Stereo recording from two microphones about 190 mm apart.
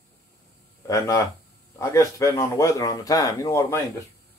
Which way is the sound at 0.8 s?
15° left (ahead or behind).